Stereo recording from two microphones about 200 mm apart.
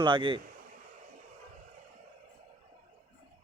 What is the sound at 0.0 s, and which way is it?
Speech, 25° right (ahead or behind).